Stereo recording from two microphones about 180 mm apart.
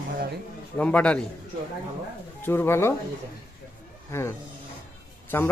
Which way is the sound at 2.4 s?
15° left (ahead or behind).